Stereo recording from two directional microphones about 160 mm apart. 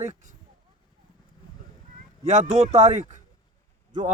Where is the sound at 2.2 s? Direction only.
50° right (ahead or behind).